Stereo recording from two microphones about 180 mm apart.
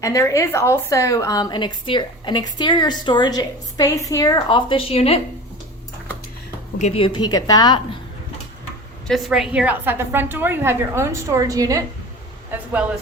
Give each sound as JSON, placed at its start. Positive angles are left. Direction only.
{"t": 0.0, "sound": "a woman's voice", "side_deg": 15}
{"t": 6.7, "sound": "a woman's voice", "side_deg": 35}
{"t": 9.0, "sound": "a woman's voice", "side_deg": 0}